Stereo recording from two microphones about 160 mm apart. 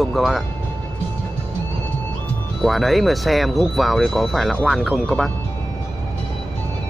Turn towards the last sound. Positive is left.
turn(degrees=0)  # may be behind; listen again after turning